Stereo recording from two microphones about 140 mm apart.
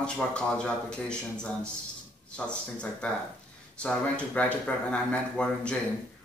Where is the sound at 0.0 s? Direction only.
5° left (ahead or behind).